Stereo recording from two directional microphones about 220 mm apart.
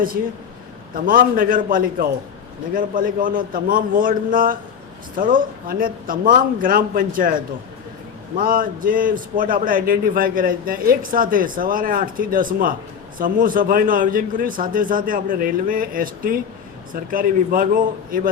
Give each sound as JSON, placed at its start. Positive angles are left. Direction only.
{"t": 0.9, "sound": "a man's voice", "side_deg": -40}